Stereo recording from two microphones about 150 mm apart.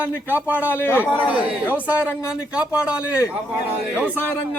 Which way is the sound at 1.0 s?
10° right (ahead or behind).